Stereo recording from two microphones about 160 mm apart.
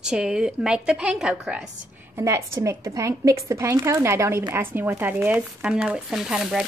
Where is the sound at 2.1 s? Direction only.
15° right (ahead or behind).